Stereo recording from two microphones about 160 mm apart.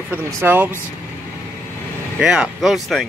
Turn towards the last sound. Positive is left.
turn(degrees=0)  # may be behind; listen again after turning